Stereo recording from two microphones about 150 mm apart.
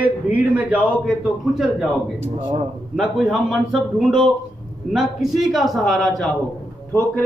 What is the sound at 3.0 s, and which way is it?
A man's voice, 5° right (ahead or behind).